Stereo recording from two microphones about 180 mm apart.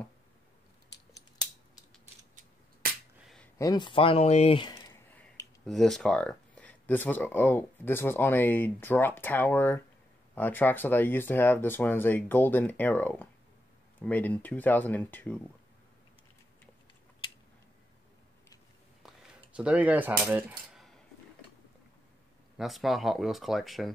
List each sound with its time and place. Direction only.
3.5 s speech: 20° left (ahead or behind)
5.7 s speech: centre (ahead or behind)
19.5 s speech: 5° right (ahead or behind)
22.6 s speech: centre (ahead or behind)